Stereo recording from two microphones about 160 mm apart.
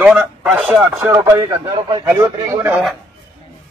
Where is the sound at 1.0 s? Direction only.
20° right (ahead or behind).